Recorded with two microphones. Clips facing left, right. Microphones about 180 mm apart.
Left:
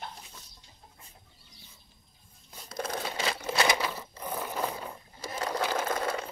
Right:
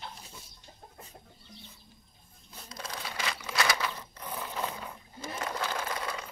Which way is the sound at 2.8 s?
50° left (ahead or behind).